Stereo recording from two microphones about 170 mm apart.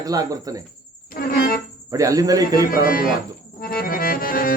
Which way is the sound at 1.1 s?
60° left (ahead or behind).